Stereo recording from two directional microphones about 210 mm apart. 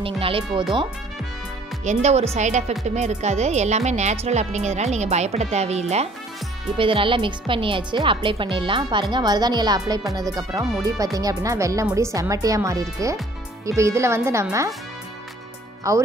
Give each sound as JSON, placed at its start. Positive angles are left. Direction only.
{"t": 0.0, "sound": "speech", "side_deg": -25}
{"t": 1.9, "sound": "speech", "side_deg": -35}
{"t": 15.8, "sound": "speech", "side_deg": -15}